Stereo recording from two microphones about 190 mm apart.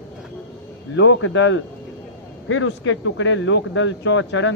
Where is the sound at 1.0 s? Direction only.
90° left.